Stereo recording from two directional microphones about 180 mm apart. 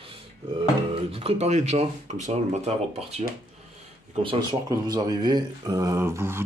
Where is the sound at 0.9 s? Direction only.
35° right (ahead or behind).